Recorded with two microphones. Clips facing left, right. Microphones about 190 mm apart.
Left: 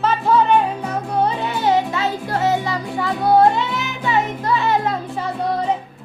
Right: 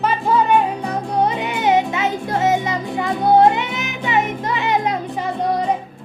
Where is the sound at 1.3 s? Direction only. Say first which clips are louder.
Right 1 dB; 20° right (ahead or behind).